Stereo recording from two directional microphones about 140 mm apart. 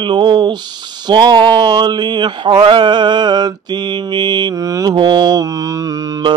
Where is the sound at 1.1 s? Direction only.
30° right (ahead or behind).